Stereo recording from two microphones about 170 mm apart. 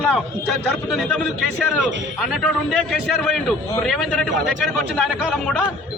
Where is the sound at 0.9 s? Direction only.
Centre (ahead or behind).